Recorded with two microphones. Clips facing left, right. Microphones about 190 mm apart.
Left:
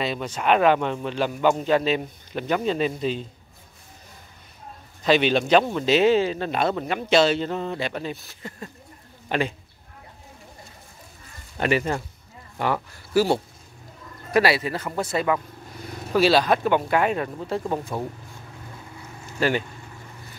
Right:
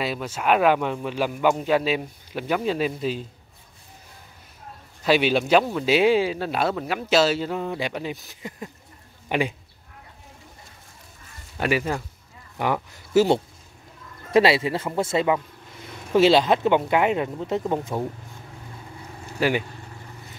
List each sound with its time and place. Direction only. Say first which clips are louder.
0.0 s speech: even; 5° right (ahead or behind)
5.0 s speech: even; 5° right (ahead or behind)
11.5 s speech: left 1 dB; 5° right (ahead or behind)
19.4 s speech: even; 15° right (ahead or behind)